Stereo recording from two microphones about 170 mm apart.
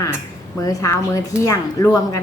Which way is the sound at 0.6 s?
20° left (ahead or behind).